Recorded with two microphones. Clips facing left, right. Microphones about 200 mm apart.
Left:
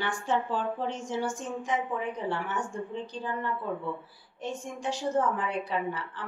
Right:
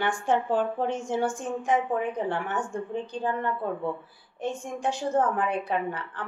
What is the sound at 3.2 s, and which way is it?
A woman's voice, 55° right (ahead or behind).